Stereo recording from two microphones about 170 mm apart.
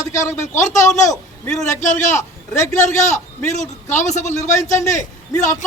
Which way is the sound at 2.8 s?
45° left (ahead or behind).